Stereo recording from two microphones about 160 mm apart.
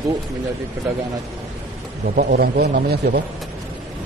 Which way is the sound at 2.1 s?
70° right (ahead or behind).